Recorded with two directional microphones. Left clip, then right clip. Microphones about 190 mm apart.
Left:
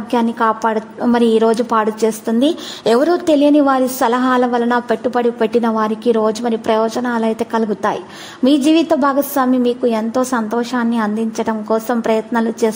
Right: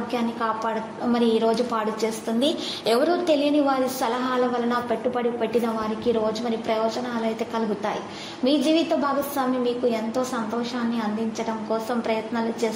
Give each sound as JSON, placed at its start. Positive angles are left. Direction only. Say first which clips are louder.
{"t": 0.1, "sound": "a woman's voice", "louder": "left 12 dB", "side_deg": 50}